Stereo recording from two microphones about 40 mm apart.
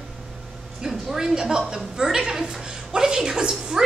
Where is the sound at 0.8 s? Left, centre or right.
Centre.